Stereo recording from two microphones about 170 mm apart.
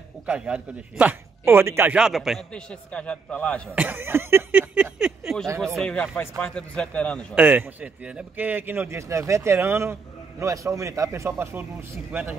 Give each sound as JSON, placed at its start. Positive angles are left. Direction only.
{"t": 0.3, "sound": "speech", "side_deg": -5}
{"t": 3.7, "sound": "a man's voice", "side_deg": -10}
{"t": 7.3, "sound": "a man's voice", "side_deg": -10}